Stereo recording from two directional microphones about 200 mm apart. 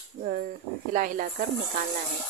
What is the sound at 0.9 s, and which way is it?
Speech, 45° right (ahead or behind).